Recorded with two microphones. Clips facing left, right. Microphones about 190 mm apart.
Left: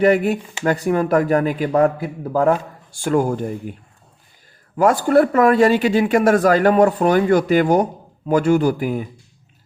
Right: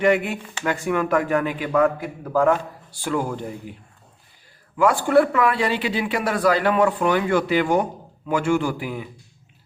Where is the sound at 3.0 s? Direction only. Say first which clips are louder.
Left 6 dB; 45° left (ahead or behind).